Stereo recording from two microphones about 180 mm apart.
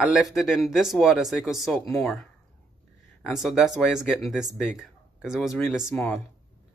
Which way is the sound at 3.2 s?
Centre (ahead or behind).